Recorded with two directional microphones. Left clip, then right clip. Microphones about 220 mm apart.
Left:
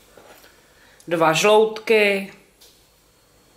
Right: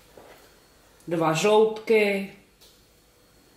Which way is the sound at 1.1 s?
10° right (ahead or behind).